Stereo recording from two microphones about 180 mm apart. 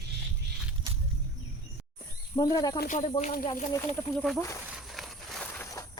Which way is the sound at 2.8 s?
45° left (ahead or behind).